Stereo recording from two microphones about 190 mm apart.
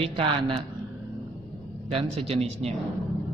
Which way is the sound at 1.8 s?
30° right (ahead or behind).